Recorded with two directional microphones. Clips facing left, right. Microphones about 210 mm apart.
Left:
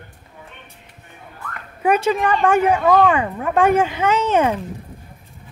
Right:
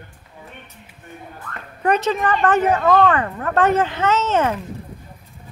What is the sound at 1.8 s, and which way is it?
A woman's voice, 10° left (ahead or behind).